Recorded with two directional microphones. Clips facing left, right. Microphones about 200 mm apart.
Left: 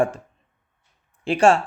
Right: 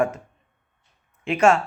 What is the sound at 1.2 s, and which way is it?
Speech, 30° left (ahead or behind).